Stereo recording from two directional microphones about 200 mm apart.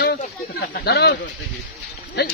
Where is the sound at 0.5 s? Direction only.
55° left (ahead or behind).